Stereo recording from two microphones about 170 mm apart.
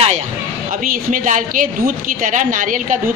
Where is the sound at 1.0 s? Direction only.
50° right (ahead or behind).